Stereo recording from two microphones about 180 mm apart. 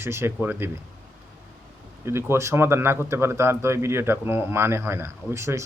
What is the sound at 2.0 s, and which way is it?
A man's voice, 15° right (ahead or behind).